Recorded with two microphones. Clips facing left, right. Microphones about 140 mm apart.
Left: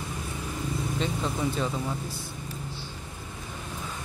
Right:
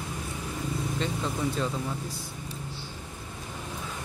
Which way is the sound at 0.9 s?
Centre (ahead or behind).